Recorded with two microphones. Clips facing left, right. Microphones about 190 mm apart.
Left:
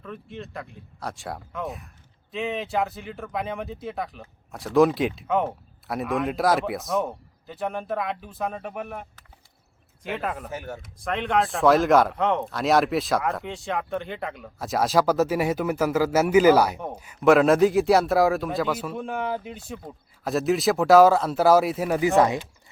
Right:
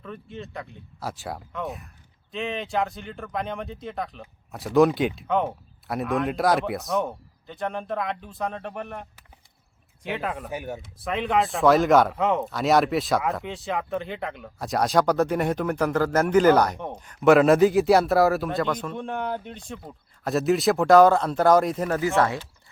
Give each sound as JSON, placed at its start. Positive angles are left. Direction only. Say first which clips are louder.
{"t": 0.0, "sound": "speech", "louder": "even", "side_deg": 0}
{"t": 10.5, "sound": "speech", "louder": "right 2 dB", "side_deg": -15}
{"t": 10.9, "sound": "speech", "louder": "even", "side_deg": 0}